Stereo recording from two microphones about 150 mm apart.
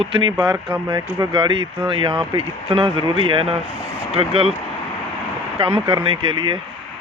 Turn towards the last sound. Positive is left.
turn(degrees=-35)  # may be behind; listen again after turning